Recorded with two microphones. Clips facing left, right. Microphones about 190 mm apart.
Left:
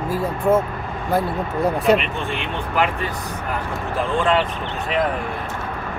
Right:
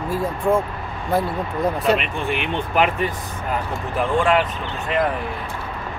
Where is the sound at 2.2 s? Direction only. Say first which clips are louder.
Right 2 dB; 20° right (ahead or behind).